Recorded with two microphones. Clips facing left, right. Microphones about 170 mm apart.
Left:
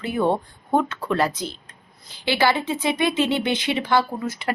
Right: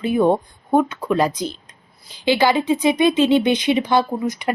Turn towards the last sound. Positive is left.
turn(degrees=-15)  # may be behind; listen again after turning